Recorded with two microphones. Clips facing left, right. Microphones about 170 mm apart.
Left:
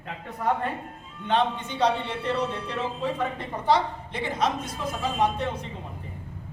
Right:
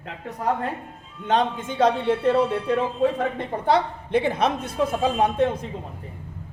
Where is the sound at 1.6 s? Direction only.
50° right (ahead or behind).